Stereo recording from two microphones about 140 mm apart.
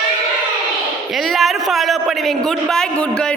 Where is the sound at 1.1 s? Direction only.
Centre (ahead or behind).